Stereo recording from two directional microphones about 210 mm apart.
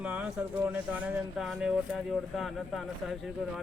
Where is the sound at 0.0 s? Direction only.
5° right (ahead or behind).